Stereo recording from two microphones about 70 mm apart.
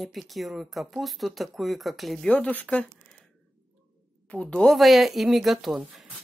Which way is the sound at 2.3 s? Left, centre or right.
Left.